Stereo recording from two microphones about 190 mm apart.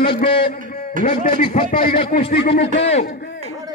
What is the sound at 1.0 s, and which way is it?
Speech, 40° left (ahead or behind).